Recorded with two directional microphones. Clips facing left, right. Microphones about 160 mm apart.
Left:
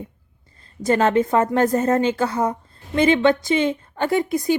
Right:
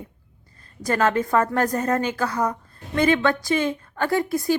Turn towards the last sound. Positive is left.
turn(degrees=20)  # may be behind; listen again after turning